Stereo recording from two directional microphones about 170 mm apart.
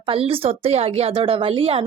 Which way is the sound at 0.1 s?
35° right (ahead or behind).